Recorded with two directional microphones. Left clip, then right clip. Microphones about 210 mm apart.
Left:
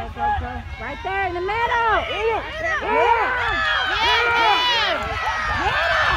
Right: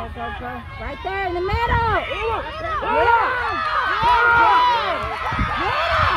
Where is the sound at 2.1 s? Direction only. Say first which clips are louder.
Left 1 dB; 25° left (ahead or behind).